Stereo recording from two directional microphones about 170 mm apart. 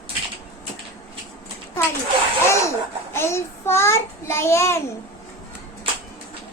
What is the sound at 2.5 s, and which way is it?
A child's voice, 15° left (ahead or behind).